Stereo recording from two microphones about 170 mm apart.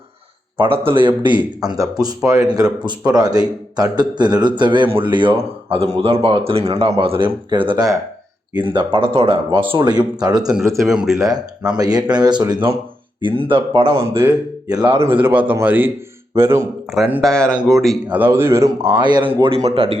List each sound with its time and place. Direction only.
0.8 s a man's voice: 30° right (ahead or behind)
10.8 s speech: 5° right (ahead or behind)
11.8 s a man's voice: 25° right (ahead or behind)
14.2 s a man's voice: 15° right (ahead or behind)
16.9 s speech: centre (ahead or behind)
18.2 s a man's voice: 15° right (ahead or behind)
19.0 s a man's voice: 30° right (ahead or behind)